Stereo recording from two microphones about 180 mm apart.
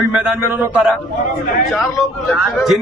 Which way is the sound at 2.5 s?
Centre (ahead or behind).